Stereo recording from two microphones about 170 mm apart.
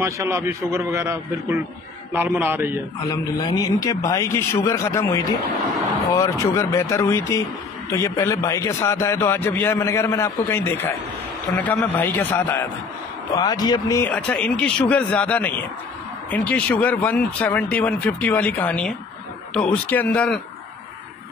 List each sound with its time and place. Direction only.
0.0 s a man's voice: 15° right (ahead or behind)
3.1 s a man's voice: 25° left (ahead or behind)
13.3 s a man's voice: 25° left (ahead or behind)
14.0 s a man's voice: 5° left (ahead or behind)